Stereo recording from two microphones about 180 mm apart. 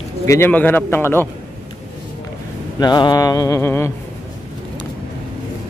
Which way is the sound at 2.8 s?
25° left (ahead or behind).